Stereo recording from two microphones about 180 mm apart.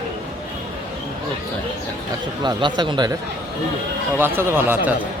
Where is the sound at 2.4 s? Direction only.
25° right (ahead or behind).